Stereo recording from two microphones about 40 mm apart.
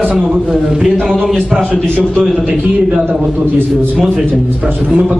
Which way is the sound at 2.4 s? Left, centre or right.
Right.